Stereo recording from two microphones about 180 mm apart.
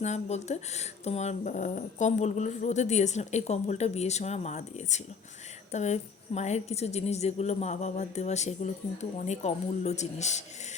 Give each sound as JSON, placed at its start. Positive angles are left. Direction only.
{"t": 0.0, "sound": "speech", "side_deg": 40}